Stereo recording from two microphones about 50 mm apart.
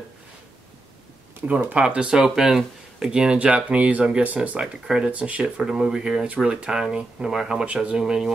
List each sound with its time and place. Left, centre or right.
1.7 s speech: right
2.1 s speech: centre
3.3 s speech: right
5.1 s speech: right
5.6 s speech: centre
6.2 s speech: right
7.6 s speech: right
8.0 s speech: centre